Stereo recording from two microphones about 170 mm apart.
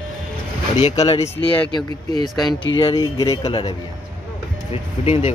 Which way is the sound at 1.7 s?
25° left (ahead or behind).